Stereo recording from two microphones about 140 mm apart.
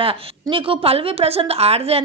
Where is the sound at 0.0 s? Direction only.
40° right (ahead or behind).